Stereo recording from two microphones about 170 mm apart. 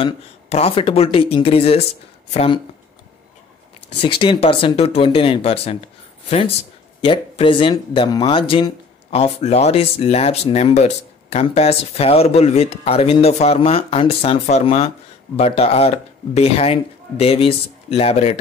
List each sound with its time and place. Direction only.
0.0 s speech: 35° left (ahead or behind)
4.0 s speech: 30° left (ahead or behind)
7.0 s speech: 30° left (ahead or behind)